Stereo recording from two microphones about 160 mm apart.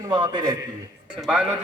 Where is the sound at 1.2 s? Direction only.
5° right (ahead or behind).